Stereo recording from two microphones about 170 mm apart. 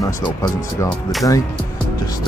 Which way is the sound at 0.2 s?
20° left (ahead or behind).